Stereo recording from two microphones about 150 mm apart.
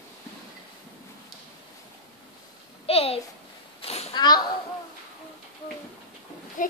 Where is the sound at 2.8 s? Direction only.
40° left (ahead or behind).